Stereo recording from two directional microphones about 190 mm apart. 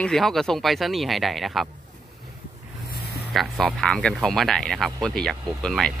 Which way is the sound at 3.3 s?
Centre (ahead or behind).